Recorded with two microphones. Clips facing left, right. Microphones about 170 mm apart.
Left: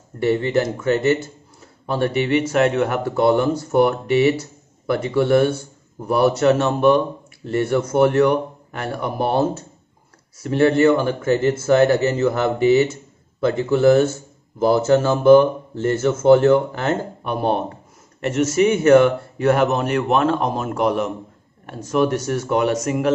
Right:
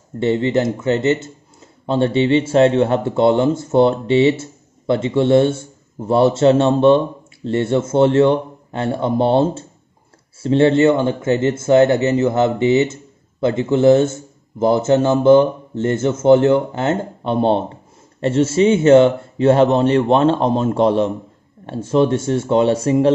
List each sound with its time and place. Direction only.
0.2 s a man's voice: 20° right (ahead or behind)